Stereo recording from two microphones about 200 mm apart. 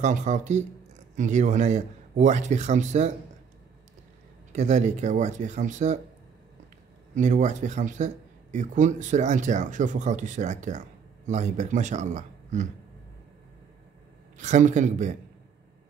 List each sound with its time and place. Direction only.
0.0 s speech: 35° right (ahead or behind)
4.5 s speech: 35° right (ahead or behind)
7.2 s speech: 35° right (ahead or behind)
14.4 s speech: 40° right (ahead or behind)